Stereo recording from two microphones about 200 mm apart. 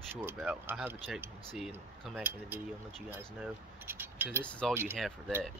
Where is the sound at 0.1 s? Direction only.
10° right (ahead or behind).